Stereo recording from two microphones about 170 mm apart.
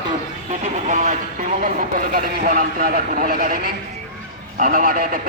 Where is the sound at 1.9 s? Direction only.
55° right (ahead or behind).